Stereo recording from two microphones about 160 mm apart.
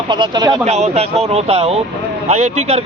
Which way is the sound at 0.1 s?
25° right (ahead or behind).